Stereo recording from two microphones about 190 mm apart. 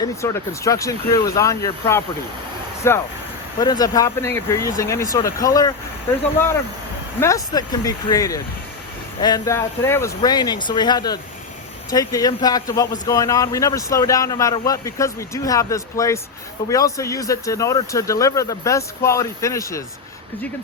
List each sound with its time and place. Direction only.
0.2 s a man's voice: 15° left (ahead or behind)
7.2 s a man's voice: 15° left (ahead or behind)